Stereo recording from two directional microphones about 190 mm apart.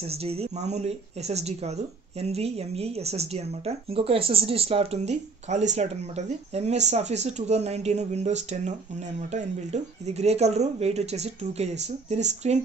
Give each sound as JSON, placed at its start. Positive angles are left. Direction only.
{"t": 0.1, "sound": "speech", "side_deg": -30}